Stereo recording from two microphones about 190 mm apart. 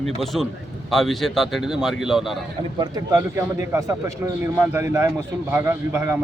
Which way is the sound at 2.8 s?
20° right (ahead or behind).